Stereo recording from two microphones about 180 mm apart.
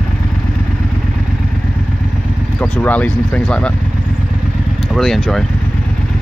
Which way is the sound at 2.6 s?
10° left (ahead or behind).